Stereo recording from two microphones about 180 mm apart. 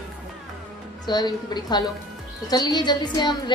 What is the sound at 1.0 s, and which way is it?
A woman's voice, 25° left (ahead or behind).